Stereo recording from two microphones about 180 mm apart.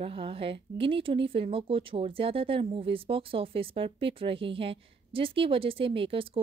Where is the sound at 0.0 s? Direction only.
30° right (ahead or behind).